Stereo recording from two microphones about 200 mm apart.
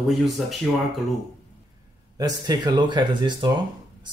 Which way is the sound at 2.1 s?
20° right (ahead or behind).